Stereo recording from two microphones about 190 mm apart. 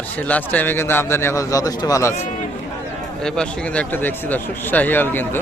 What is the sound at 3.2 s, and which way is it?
Speech, 5° left (ahead or behind).